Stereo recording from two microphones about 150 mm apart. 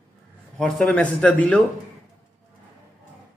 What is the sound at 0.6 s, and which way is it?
A man's voice, 5° left (ahead or behind).